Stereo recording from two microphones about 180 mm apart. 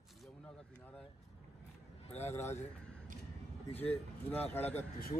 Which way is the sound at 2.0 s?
35° left (ahead or behind).